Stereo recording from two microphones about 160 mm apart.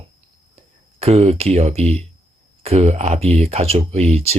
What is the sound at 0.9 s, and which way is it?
Speech, 40° right (ahead or behind).